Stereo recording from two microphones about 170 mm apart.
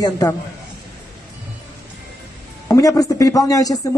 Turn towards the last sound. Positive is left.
turn(degrees=20)  # may be behind; listen again after turning